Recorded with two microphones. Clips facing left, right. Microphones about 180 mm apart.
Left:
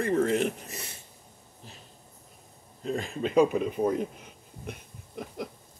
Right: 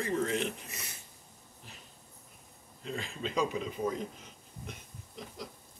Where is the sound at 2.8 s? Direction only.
45° left (ahead or behind).